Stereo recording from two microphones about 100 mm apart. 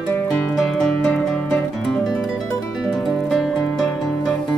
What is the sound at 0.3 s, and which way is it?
Music, 10° left (ahead or behind).